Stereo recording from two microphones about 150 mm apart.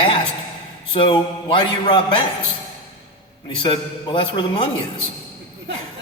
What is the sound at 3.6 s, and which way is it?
A man's voice, 35° left (ahead or behind).